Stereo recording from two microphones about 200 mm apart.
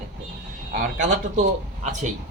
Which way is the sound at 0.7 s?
40° right (ahead or behind).